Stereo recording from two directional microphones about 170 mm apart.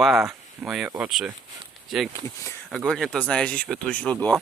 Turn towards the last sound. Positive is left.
turn(degrees=5)  # may be behind; listen again after turning